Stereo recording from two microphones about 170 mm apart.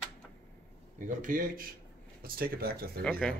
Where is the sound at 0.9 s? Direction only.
50° right (ahead or behind).